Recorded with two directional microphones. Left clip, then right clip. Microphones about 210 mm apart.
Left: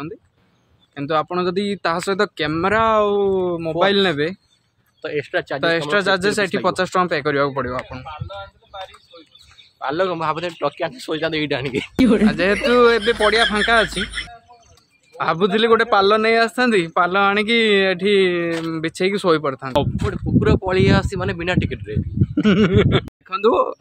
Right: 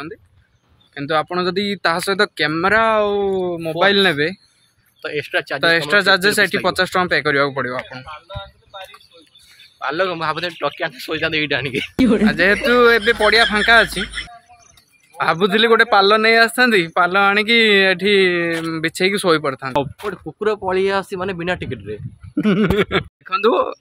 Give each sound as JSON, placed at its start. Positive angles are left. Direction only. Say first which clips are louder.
{"t": 0.9, "sound": "speech", "louder": "right 1 dB", "side_deg": 0}
{"t": 5.0, "sound": "speech", "louder": "right 1 dB", "side_deg": 20}
{"t": 5.6, "sound": "speech", "louder": "right 4 dB", "side_deg": -5}
{"t": 8.0, "sound": "speech", "louder": "even", "side_deg": 25}
{"t": 11.9, "sound": "a man's voice", "louder": "even", "side_deg": 0}
{"t": 22.3, "sound": "speech", "louder": "left 1 dB", "side_deg": 10}
{"t": 23.2, "sound": "speech", "louder": "right 1 dB", "side_deg": 0}